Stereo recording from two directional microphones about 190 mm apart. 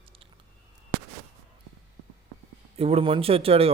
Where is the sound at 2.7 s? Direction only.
30° right (ahead or behind).